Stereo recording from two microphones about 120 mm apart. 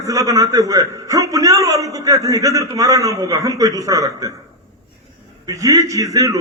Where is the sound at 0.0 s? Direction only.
25° right (ahead or behind).